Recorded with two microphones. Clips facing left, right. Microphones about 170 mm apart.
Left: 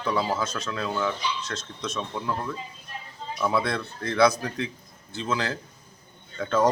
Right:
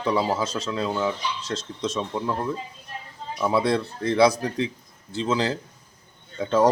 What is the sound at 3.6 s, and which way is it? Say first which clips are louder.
Speech: right 6 dB; 30° right (ahead or behind).